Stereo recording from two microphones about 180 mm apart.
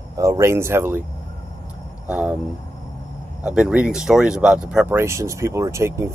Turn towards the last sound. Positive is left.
turn(degrees=-15)  # may be behind; listen again after turning